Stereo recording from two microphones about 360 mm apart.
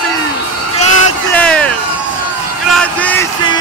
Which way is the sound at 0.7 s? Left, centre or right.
Left.